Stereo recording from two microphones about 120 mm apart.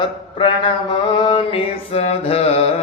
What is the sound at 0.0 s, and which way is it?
Mantra, 45° left (ahead or behind).